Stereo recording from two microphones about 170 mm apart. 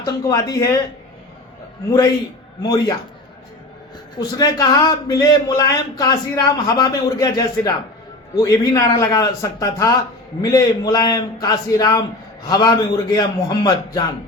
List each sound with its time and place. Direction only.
0.0 s a man's voice: 20° left (ahead or behind)
1.9 s a man's voice: 25° left (ahead or behind)
4.2 s a man's voice: 20° left (ahead or behind)